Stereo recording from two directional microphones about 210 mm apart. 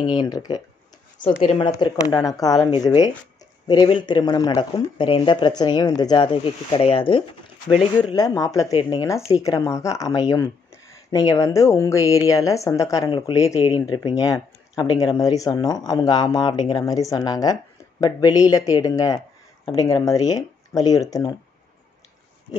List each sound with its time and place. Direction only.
0.0 s speech: 20° left (ahead or behind)